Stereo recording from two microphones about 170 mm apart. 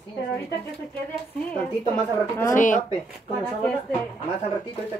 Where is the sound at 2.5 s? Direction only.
50° left (ahead or behind).